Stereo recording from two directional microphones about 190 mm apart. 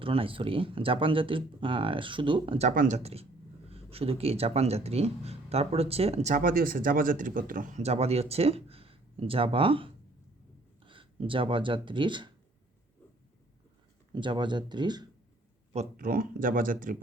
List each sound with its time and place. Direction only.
0.0 s speech: 30° right (ahead or behind)
14.1 s speech: 25° right (ahead or behind)
15.7 s speech: 40° right (ahead or behind)